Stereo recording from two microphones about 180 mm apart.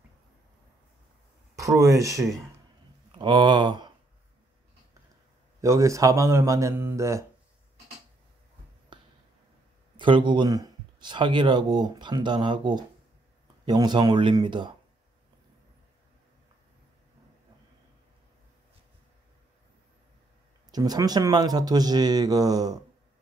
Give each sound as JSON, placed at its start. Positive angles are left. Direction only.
{"t": 1.5, "sound": "speech", "side_deg": -15}
{"t": 5.6, "sound": "speech", "side_deg": -15}
{"t": 9.9, "sound": "speech", "side_deg": -25}
{"t": 20.7, "sound": "speech", "side_deg": -20}